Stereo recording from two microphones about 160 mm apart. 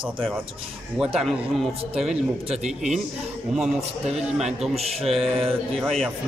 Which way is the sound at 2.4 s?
40° right (ahead or behind).